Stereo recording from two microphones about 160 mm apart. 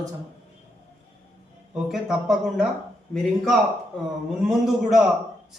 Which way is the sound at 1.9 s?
5° right (ahead or behind).